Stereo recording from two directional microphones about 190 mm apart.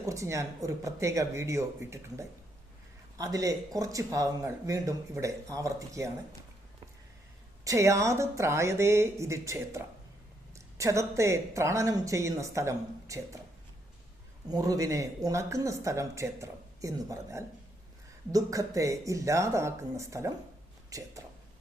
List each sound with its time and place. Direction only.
0.0 s speech: 15° right (ahead or behind)
7.6 s speech: 15° right (ahead or behind)
14.5 s speech: 20° right (ahead or behind)